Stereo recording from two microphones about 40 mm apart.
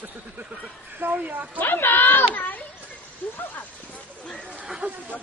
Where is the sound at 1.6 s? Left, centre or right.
Left.